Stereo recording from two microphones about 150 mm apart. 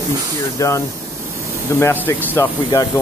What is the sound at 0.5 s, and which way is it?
Speech, 20° left (ahead or behind).